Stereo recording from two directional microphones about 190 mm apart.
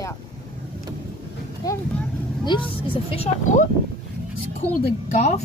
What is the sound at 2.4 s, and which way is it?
Speech, 25° left (ahead or behind).